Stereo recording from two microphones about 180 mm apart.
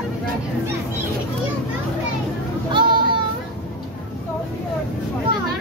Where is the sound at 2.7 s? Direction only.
25° right (ahead or behind).